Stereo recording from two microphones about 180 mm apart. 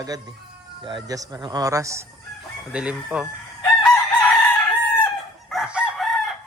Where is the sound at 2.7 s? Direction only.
5° right (ahead or behind).